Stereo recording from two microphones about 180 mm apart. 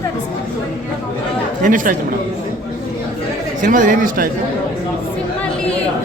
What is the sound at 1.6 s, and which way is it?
Speech, 45° right (ahead or behind).